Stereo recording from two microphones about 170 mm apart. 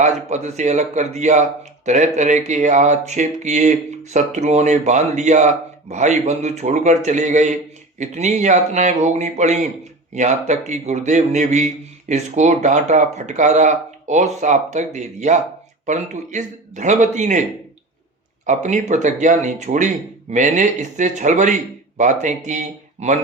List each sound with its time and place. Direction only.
0.0 s speech: 45° right (ahead or behind)
18.4 s speech: 45° right (ahead or behind)